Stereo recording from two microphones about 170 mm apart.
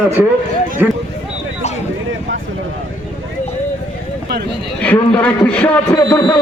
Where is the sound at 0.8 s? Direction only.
10° right (ahead or behind).